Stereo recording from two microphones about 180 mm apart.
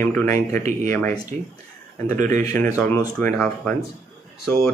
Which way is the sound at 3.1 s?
10° left (ahead or behind).